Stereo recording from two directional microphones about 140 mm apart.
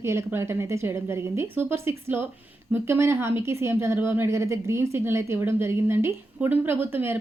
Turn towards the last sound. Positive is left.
turn(degrees=-15)  # may be behind; listen again after turning